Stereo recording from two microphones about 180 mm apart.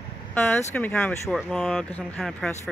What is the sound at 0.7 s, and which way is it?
Speech, 10° left (ahead or behind).